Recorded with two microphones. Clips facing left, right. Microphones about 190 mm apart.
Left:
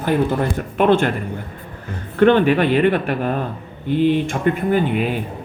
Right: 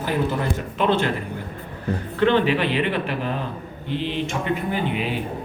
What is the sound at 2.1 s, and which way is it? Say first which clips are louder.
Speech: left 6 dB; 50° left (ahead or behind).